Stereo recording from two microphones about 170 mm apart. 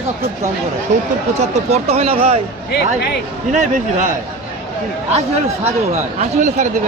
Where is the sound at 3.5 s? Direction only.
45° right (ahead or behind).